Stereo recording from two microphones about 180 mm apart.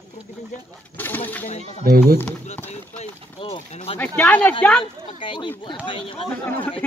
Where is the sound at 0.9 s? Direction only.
10° left (ahead or behind).